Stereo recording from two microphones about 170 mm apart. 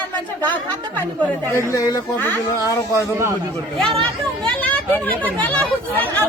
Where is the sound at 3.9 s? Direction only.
30° right (ahead or behind).